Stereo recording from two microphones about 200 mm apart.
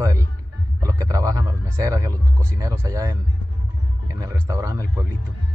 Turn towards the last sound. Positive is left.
turn(degrees=-15)  # may be behind; listen again after turning